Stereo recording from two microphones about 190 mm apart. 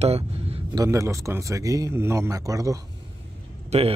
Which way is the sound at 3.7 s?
35° right (ahead or behind).